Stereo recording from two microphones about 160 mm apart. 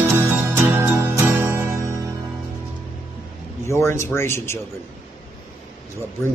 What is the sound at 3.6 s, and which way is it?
Speech, 15° left (ahead or behind).